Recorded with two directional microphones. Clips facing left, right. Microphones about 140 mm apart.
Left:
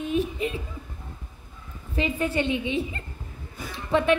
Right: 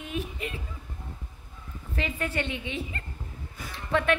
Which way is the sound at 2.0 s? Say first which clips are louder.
Left 5 dB; 20° left (ahead or behind).